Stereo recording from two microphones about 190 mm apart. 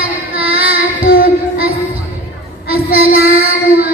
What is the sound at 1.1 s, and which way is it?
Child singing, 70° left (ahead or behind).